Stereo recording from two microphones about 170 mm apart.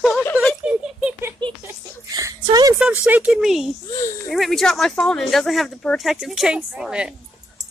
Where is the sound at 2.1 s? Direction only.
20° right (ahead or behind).